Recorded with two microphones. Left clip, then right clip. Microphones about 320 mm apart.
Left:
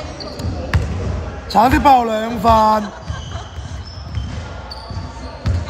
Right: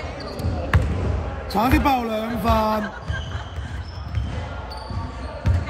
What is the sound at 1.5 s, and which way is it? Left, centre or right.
A man's voice, centre.